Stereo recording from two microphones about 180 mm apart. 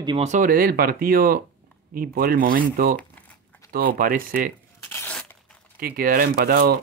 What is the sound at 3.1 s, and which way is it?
Crumpling, 10° left (ahead or behind).